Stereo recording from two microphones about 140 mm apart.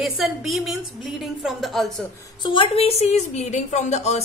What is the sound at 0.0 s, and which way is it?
A woman's voice, centre (ahead or behind).